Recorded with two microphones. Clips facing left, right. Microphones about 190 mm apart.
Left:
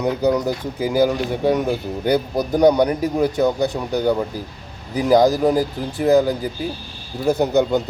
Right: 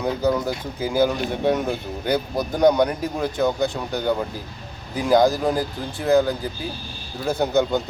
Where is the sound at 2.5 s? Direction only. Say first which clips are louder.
Left 3 dB; 10° left (ahead or behind).